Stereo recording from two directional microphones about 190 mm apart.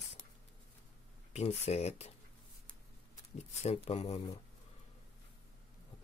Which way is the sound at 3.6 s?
35° left (ahead or behind).